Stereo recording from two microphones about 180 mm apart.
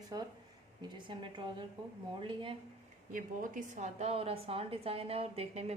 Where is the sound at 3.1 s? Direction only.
45° right (ahead or behind).